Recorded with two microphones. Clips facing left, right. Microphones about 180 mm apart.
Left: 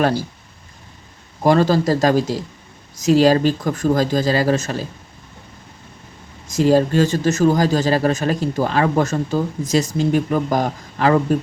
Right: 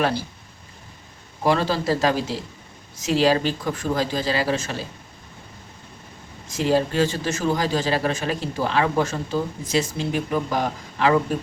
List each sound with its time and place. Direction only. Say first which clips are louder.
1.5 s speech: left 6 dB; 45° left (ahead or behind)
6.5 s speech: left 6 dB; 40° left (ahead or behind)